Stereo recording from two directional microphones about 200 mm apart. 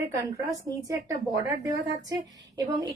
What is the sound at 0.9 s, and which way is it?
Speech, 15° right (ahead or behind).